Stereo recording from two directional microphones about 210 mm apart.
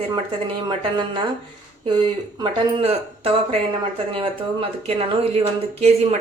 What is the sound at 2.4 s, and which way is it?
A woman's voice, 25° right (ahead or behind).